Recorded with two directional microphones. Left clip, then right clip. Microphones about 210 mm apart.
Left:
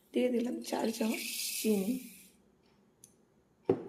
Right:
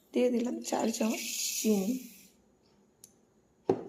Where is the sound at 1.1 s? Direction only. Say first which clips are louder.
Right 3 dB; 5° left (ahead or behind).